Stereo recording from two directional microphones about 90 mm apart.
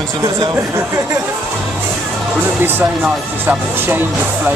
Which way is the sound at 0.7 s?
30° right (ahead or behind).